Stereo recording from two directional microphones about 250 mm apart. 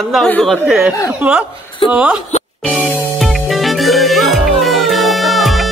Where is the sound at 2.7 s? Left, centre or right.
Centre.